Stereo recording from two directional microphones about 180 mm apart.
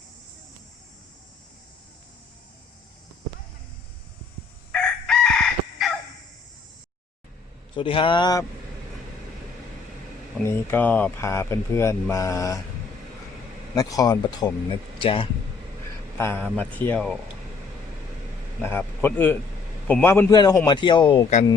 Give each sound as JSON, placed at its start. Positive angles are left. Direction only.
{"t": 4.7, "sound": "chicken", "side_deg": 5}
{"t": 7.8, "sound": "speech", "side_deg": 30}
{"t": 10.4, "sound": "speech", "side_deg": 10}
{"t": 13.7, "sound": "speech", "side_deg": 20}
{"t": 16.1, "sound": "speech", "side_deg": 15}
{"t": 18.6, "sound": "a man's voice", "side_deg": 15}
{"t": 20.3, "sound": "speech", "side_deg": 25}